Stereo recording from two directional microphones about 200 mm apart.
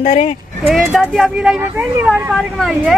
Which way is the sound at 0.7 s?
Centre (ahead or behind).